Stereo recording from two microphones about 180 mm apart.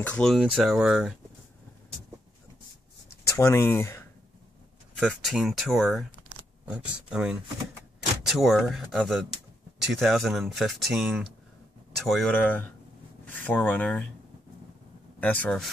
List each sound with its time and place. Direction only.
0.0 s speech: 5° left (ahead or behind)
3.3 s speech: 15° left (ahead or behind)
4.9 s speech: centre (ahead or behind)
15.1 s speech: 10° left (ahead or behind)